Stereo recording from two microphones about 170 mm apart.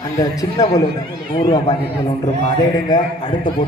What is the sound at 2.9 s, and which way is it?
Speech, 25° left (ahead or behind).